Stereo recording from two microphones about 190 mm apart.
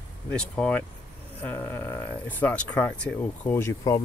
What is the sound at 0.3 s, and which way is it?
Speech, 5° left (ahead or behind).